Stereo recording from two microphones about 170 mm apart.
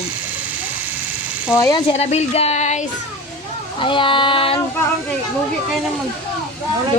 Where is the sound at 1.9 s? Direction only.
40° left (ahead or behind).